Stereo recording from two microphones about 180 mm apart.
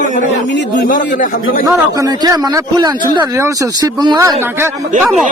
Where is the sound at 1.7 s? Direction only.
20° right (ahead or behind).